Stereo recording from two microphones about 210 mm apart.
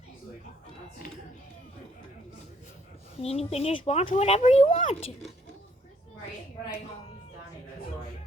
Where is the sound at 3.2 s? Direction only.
30° left (ahead or behind).